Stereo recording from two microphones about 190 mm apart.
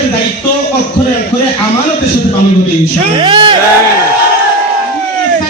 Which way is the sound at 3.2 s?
25° right (ahead or behind).